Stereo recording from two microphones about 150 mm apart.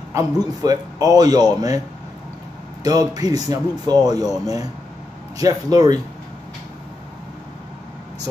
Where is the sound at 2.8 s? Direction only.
25° right (ahead or behind).